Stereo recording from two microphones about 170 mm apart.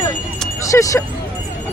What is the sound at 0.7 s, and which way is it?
Vehicle, 20° left (ahead or behind).